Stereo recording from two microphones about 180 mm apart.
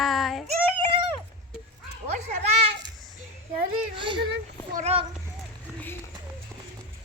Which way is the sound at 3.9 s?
25° right (ahead or behind).